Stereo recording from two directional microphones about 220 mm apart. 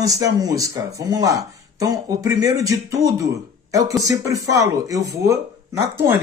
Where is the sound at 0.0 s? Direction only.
15° right (ahead or behind).